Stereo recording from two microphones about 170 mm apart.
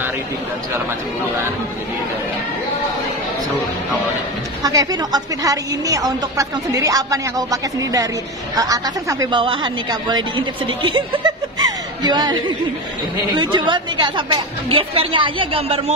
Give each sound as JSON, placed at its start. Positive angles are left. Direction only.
{"t": 4.6, "sound": "a woman's voice", "side_deg": -20}